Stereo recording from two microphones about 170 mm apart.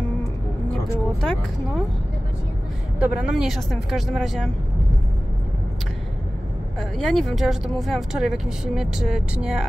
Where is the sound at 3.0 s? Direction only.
5° right (ahead or behind).